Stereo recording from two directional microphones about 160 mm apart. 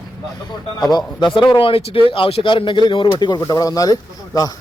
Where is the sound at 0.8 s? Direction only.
25° left (ahead or behind).